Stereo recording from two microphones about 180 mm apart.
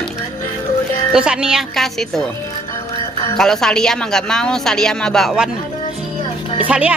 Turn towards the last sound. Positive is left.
turn(degrees=-5)  # may be behind; listen again after turning